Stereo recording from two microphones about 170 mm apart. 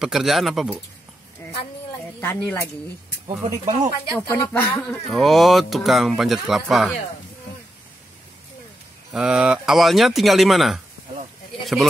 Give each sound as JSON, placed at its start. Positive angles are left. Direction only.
{"t": 0.0, "sound": "speech", "side_deg": 0}
{"t": 2.1, "sound": "speech", "side_deg": 10}
{"t": 3.4, "sound": "speech", "side_deg": -25}
{"t": 4.3, "sound": "speech", "side_deg": 10}
{"t": 5.1, "sound": "speech", "side_deg": 0}
{"t": 9.1, "sound": "speech", "side_deg": -5}